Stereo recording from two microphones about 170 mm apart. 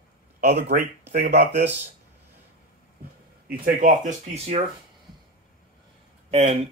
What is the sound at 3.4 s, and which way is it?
Speech, 55° right (ahead or behind).